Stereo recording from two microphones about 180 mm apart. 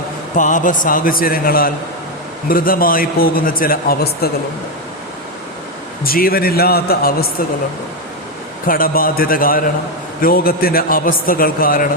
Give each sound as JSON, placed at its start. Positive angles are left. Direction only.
{"t": 0.3, "sound": "a man's voice", "side_deg": 45}
{"t": 6.0, "sound": "a man's voice", "side_deg": 55}
{"t": 8.6, "sound": "a man's voice", "side_deg": 50}